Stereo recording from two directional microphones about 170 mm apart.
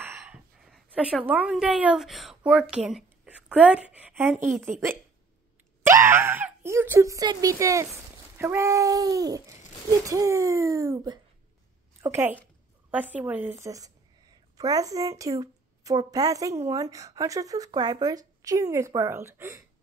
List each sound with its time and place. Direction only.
0.0 s gasp: 10° right (ahead or behind)
0.7 s a sound: centre (ahead or behind)
1.2 s a woman's voice: 10° right (ahead or behind)